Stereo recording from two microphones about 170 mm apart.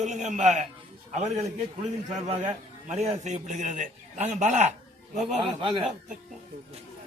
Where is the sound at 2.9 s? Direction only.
40° right (ahead or behind).